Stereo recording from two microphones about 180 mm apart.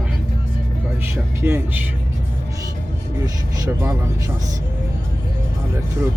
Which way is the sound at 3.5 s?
15° right (ahead or behind).